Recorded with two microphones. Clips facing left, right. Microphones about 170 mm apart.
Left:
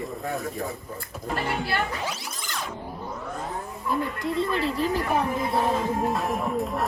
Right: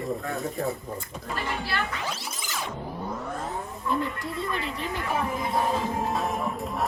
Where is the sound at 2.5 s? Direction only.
5° right (ahead or behind).